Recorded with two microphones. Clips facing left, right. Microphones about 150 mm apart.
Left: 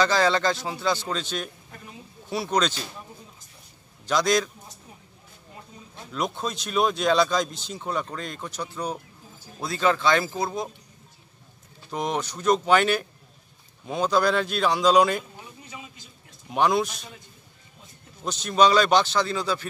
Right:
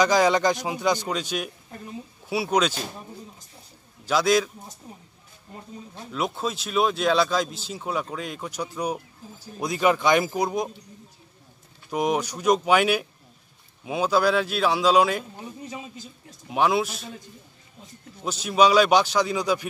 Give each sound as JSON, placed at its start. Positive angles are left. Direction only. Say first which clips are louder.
{"t": 0.0, "sound": "a man's voice", "louder": "right 2 dB", "side_deg": -15}
{"t": 4.0, "sound": "a man's voice", "louder": "right 2 dB", "side_deg": -5}
{"t": 6.1, "sound": "a man's voice", "louder": "right 1 dB", "side_deg": -5}
{"t": 11.9, "sound": "a man's voice", "louder": "right 4 dB", "side_deg": -10}
{"t": 15.6, "sound": "a sound", "louder": "right 7 dB", "side_deg": -40}
{"t": 16.4, "sound": "speech", "louder": "even", "side_deg": -5}
{"t": 18.2, "sound": "a man's voice", "louder": "right 1 dB", "side_deg": -5}